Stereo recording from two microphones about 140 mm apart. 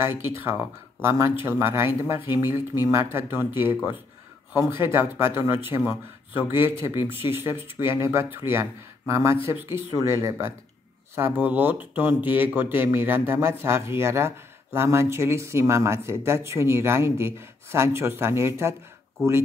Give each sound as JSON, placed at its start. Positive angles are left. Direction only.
{"t": 0.0, "sound": "speech", "side_deg": -20}